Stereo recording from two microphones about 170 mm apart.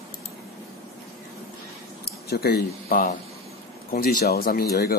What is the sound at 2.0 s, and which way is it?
Speech, 65° left (ahead or behind).